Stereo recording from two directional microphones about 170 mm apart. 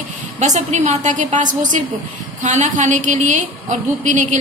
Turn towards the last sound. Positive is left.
turn(degrees=-45)  # may be behind; listen again after turning